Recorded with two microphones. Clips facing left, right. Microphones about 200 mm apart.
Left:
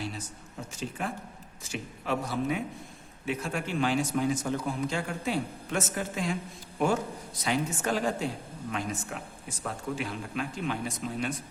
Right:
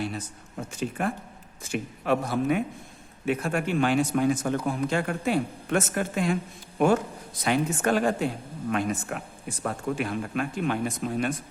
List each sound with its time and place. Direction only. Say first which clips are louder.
0.7 s a man's voice: right 6 dB; 55° right (ahead or behind)